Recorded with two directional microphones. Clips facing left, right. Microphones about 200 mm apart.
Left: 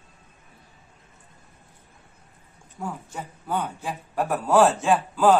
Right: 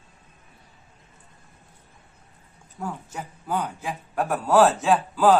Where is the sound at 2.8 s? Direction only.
Centre (ahead or behind).